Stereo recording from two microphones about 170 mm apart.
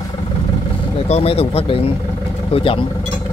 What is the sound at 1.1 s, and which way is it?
Speech, 35° left (ahead or behind).